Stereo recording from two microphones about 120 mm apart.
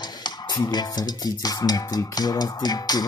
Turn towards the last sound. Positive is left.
turn(degrees=35)  # may be behind; listen again after turning